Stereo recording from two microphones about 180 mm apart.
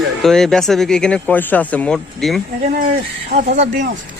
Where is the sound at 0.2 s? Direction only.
Centre (ahead or behind).